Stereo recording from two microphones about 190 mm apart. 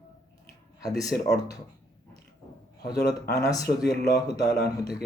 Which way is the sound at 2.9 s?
60° left (ahead or behind).